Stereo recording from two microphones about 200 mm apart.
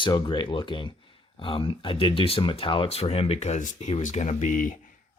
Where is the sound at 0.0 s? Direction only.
25° left (ahead or behind).